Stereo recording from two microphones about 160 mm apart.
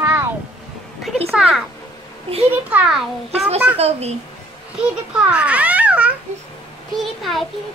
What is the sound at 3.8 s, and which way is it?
Speech, 40° right (ahead or behind).